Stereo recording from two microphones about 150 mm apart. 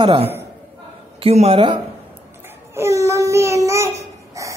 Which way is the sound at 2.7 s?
20° right (ahead or behind).